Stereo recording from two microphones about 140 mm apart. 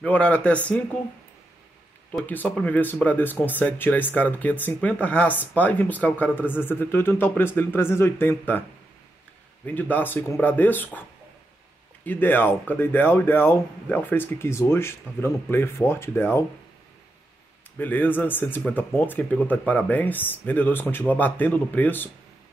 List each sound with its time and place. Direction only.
0.0 s speech: 10° left (ahead or behind)
2.2 s speech: 10° left (ahead or behind)
9.7 s speech: 10° left (ahead or behind)
17.7 s speech: 15° left (ahead or behind)